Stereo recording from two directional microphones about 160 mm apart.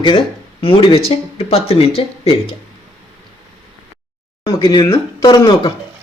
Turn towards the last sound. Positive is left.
turn(degrees=25)  # may be behind; listen again after turning